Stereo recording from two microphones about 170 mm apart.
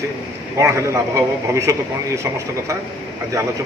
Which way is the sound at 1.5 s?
15° right (ahead or behind).